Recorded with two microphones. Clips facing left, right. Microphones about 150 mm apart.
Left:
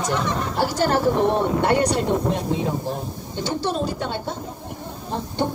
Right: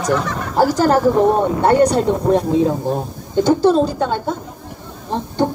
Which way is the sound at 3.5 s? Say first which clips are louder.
Right 10 dB; 40° right (ahead or behind).